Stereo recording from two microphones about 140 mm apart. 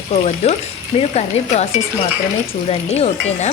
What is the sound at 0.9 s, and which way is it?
Speech, 50° left (ahead or behind).